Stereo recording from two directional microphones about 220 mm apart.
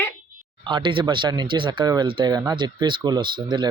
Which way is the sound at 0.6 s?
20° right (ahead or behind).